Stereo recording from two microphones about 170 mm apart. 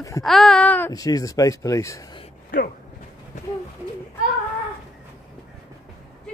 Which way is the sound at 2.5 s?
55° left (ahead or behind).